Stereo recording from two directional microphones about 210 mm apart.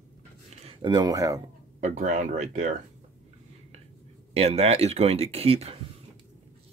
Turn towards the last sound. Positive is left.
turn(degrees=-30)  # may be behind; listen again after turning